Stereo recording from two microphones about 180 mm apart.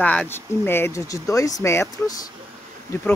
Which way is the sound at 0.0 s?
5° left (ahead or behind).